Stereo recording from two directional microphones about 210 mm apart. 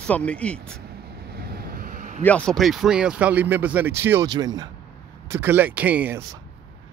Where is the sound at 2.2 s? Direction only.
5° left (ahead or behind).